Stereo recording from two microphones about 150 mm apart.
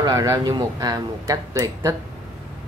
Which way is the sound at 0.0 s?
25° right (ahead or behind).